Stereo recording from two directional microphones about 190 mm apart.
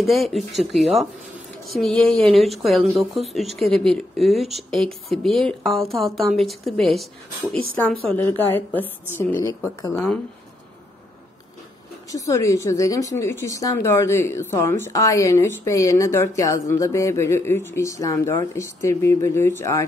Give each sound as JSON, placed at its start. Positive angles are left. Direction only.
{"t": 0.0, "sound": "speech", "side_deg": 0}
{"t": 12.1, "sound": "speech", "side_deg": 15}